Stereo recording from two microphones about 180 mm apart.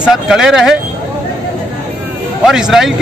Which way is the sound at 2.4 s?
Centre (ahead or behind).